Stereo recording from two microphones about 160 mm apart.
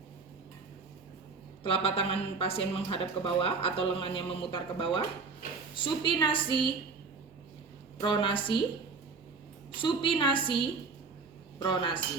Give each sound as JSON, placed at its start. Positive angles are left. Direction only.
{"t": 1.6, "sound": "speech", "side_deg": 35}
{"t": 8.0, "sound": "speech", "side_deg": 30}
{"t": 9.7, "sound": "speech", "side_deg": 30}
{"t": 11.6, "sound": "speech", "side_deg": 30}